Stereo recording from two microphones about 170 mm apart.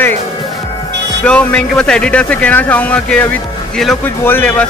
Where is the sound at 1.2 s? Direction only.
5° left (ahead or behind).